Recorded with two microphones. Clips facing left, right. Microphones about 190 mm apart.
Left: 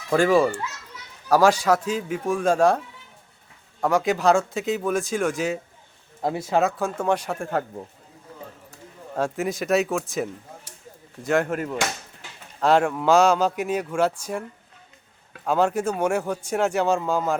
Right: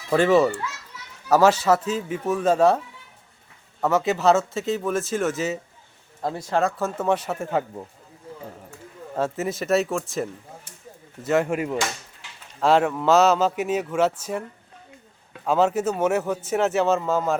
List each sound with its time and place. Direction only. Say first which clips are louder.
0.2 s a man's voice: right 1 dB; 10° left (ahead or behind)
3.9 s a man's voice: even; 10° left (ahead or behind)
4.4 s speech: even; centre (ahead or behind)
6.2 s speech: left 1 dB; 10° left (ahead or behind)
9.1 s speech: even; centre (ahead or behind)
15.4 s speech: right 1 dB; 5° right (ahead or behind)